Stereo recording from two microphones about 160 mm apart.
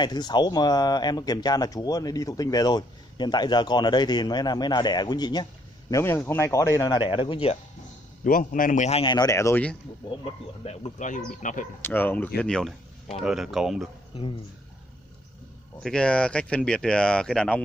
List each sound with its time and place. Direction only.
0.0 s speech: 25° left (ahead or behind)
8.2 s a man's voice: 55° left (ahead or behind)
9.0 s speech: 25° left (ahead or behind)
10.2 s speech: 40° left (ahead or behind)
11.8 s speech: 10° left (ahead or behind)
14.1 s speech: 35° left (ahead or behind)
15.8 s speech: 5° left (ahead or behind)